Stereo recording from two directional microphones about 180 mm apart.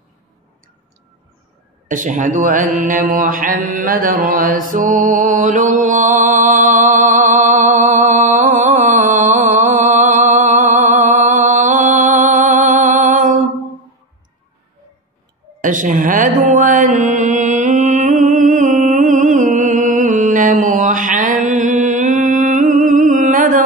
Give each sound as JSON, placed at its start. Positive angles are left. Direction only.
{"t": 1.9, "sound": "mantra", "side_deg": -45}
{"t": 15.6, "sound": "mantra", "side_deg": -45}